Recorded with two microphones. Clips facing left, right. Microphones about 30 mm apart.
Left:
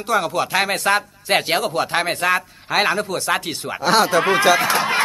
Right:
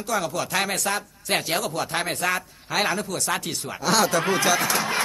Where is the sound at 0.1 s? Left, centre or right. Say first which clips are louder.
Left 6 dB; left.